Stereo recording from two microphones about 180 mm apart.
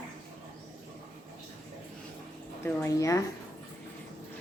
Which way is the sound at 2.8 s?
15° left (ahead or behind).